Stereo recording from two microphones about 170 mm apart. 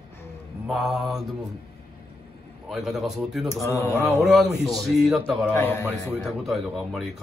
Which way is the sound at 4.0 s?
Centre (ahead or behind).